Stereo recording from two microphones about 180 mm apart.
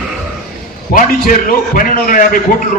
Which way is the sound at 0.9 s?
50° left (ahead or behind).